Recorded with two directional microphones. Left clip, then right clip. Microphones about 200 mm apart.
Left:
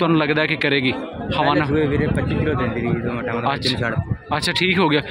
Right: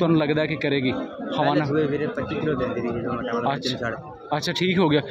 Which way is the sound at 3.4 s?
10° right (ahead or behind).